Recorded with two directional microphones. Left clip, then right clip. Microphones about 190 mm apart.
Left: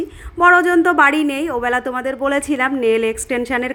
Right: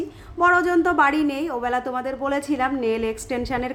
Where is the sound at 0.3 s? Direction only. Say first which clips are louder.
Left 6 dB; 30° left (ahead or behind).